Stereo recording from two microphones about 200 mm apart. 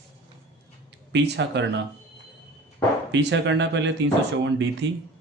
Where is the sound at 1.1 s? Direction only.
60° right (ahead or behind).